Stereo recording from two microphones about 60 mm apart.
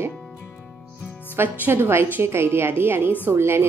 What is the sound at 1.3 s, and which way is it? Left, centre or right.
A woman's voice, right.